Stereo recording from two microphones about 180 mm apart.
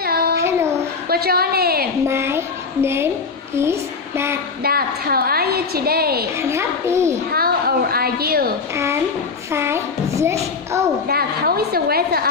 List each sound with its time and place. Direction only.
0.0 s child singing: 60° right (ahead or behind)
0.4 s child singing: 15° right (ahead or behind)
1.0 s a sound: 60° right (ahead or behind)
2.0 s a child's voice: 15° right (ahead or behind)
4.6 s a woman's voice: 55° right (ahead or behind)
6.5 s speech: 15° right (ahead or behind)
7.3 s a woman's voice: 55° right (ahead or behind)
8.7 s speech: 15° right (ahead or behind)
11.1 s a woman's voice: 55° right (ahead or behind)